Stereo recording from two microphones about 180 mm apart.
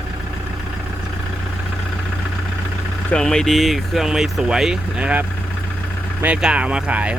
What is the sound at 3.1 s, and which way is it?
Speech, 5° left (ahead or behind).